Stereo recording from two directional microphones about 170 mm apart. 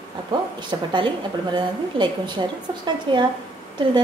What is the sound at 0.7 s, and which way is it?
Speech, 25° right (ahead or behind).